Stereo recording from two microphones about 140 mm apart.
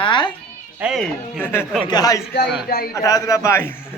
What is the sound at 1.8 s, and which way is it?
A man's voice, 30° left (ahead or behind).